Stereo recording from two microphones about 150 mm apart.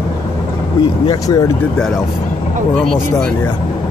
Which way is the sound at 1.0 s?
25° left (ahead or behind).